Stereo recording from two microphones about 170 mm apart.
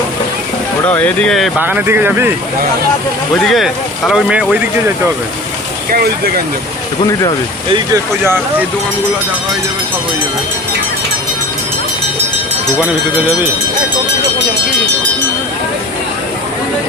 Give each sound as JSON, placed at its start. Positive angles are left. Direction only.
{"t": 0.9, "sound": "speech", "side_deg": 10}
{"t": 1.5, "sound": "speech", "side_deg": -10}
{"t": 3.3, "sound": "speech", "side_deg": 0}
{"t": 5.9, "sound": "speech", "side_deg": -65}